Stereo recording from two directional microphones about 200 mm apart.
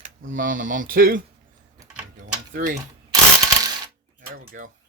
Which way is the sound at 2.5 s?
40° right (ahead or behind).